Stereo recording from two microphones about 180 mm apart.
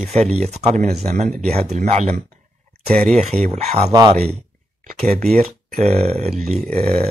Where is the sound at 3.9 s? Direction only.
20° right (ahead or behind).